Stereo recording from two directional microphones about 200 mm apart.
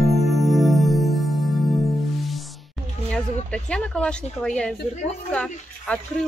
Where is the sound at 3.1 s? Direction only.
5° left (ahead or behind).